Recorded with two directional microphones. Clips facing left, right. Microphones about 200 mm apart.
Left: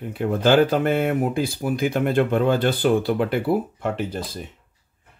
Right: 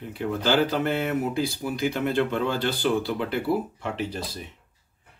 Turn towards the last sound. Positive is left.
turn(degrees=50)  # may be behind; listen again after turning